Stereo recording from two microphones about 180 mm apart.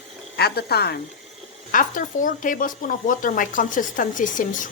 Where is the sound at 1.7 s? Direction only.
50° left (ahead or behind).